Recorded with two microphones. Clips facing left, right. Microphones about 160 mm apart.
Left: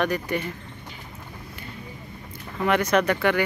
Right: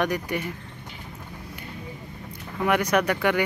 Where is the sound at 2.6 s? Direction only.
10° right (ahead or behind).